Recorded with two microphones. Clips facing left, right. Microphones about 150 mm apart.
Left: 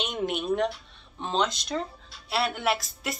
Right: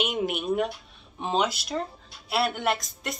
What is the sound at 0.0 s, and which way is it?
Speech, 5° right (ahead or behind).